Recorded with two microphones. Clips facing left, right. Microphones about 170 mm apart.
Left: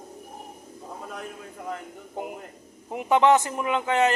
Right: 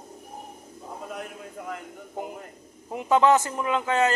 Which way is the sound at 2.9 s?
20° left (ahead or behind).